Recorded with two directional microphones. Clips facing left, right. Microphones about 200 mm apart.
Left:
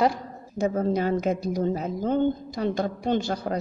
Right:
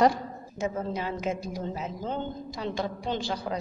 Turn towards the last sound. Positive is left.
turn(degrees=45)  # may be behind; listen again after turning